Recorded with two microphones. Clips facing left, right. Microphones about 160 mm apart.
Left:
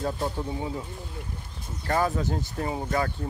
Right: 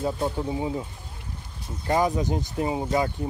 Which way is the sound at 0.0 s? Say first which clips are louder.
Right 3 dB; 10° right (ahead or behind).